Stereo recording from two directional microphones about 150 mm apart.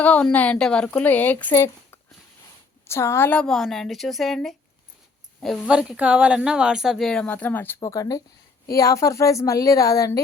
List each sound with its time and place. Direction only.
0.0 s a woman's voice: 10° left (ahead or behind)